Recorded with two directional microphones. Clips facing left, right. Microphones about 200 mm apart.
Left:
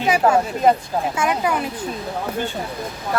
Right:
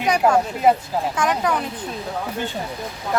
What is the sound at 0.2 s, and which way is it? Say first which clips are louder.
Speech: even; 10° right (ahead or behind).